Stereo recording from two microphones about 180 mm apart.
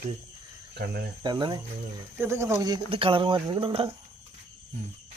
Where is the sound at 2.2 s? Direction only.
15° right (ahead or behind); by 3.9 s 30° right (ahead or behind).